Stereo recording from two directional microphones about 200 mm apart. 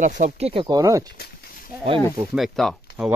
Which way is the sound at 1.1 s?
50° left (ahead or behind).